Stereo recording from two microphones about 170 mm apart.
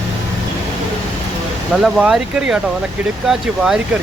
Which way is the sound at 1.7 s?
Centre (ahead or behind).